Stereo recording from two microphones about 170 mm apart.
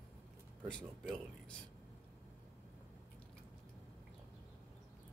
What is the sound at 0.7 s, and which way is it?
Speech, 5° left (ahead or behind).